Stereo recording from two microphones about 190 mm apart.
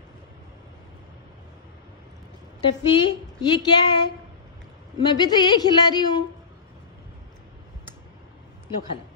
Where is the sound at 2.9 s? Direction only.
25° left (ahead or behind).